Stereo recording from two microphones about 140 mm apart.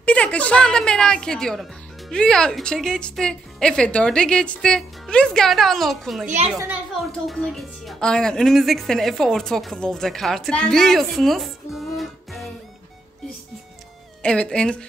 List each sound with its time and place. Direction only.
0.0 s a woman's voice: 10° left (ahead or behind)
6.2 s a child's voice: 55° right (ahead or behind)
6.7 s a woman's voice: centre (ahead or behind)
14.2 s a woman's voice: 5° left (ahead or behind)